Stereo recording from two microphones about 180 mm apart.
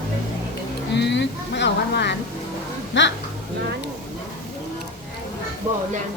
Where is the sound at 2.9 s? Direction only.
90° left.